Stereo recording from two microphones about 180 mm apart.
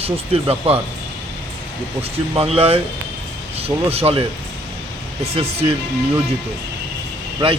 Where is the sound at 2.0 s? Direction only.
35° right (ahead or behind).